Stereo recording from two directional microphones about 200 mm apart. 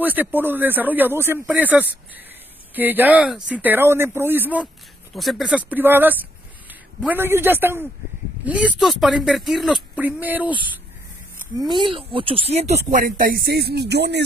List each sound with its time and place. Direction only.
0.0 s a man's voice: 10° right (ahead or behind)
11.5 s speech: 20° right (ahead or behind)
12.9 s speech: 45° right (ahead or behind)